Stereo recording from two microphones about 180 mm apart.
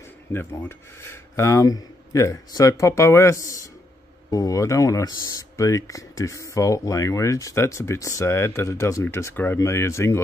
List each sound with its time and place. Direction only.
0.3 s speech: 15° left (ahead or behind)